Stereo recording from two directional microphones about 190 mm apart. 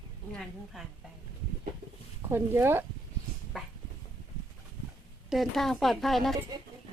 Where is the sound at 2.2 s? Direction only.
15° right (ahead or behind).